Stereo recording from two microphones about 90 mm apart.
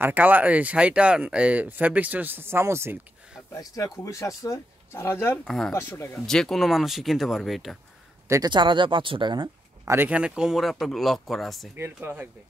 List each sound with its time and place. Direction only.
0.0 s speech: 20° right (ahead or behind)
3.5 s speech: 40° left (ahead or behind)
5.4 s speech: 5° left (ahead or behind)
5.7 s speech: 30° left (ahead or behind)
6.1 s speech: 5° left (ahead or behind)
8.5 s speech: 60° right (ahead or behind)
10.0 s speech: 10° right (ahead or behind)
11.7 s speech: 25° right (ahead or behind)